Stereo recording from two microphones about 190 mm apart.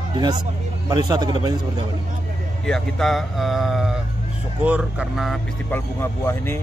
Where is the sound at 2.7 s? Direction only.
Centre (ahead or behind).